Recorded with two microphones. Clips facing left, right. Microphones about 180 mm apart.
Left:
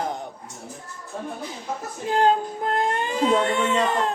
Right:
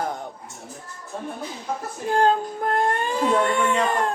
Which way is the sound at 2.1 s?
15° left (ahead or behind).